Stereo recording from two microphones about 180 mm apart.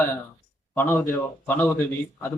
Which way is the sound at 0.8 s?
10° left (ahead or behind).